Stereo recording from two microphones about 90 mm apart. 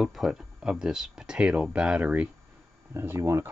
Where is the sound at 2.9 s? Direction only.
30° right (ahead or behind).